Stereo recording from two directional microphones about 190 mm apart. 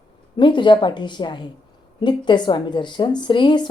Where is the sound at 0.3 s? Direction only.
25° left (ahead or behind).